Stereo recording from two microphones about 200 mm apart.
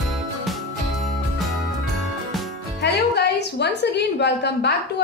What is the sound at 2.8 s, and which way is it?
Music, 55° left (ahead or behind).